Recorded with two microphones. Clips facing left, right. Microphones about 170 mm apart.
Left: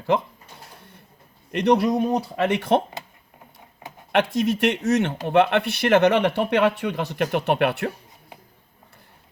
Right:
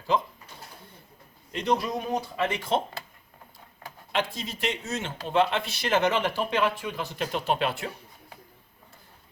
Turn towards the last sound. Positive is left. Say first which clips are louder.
# left 6 dB
turn(degrees=65)  # may be behind; listen again after turning